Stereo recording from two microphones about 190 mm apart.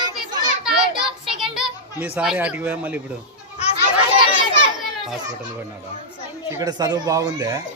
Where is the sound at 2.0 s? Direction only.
5° right (ahead or behind).